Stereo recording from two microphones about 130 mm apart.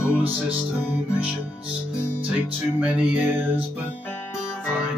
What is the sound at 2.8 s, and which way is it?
Music, 10° right (ahead or behind).